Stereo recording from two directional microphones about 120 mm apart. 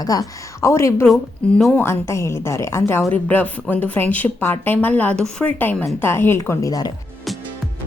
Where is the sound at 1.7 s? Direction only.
20° left (ahead or behind).